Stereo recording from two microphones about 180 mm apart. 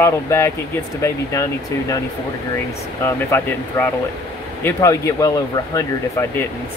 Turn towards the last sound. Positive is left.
turn(degrees=20)  # may be behind; listen again after turning